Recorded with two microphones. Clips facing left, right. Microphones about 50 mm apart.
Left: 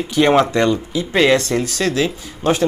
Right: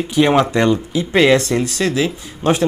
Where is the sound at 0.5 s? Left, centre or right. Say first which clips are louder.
Right 1 dB; centre.